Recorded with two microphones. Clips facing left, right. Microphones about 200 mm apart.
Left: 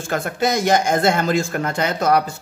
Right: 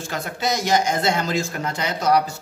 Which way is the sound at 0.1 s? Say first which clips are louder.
Left 5 dB; 55° left (ahead or behind).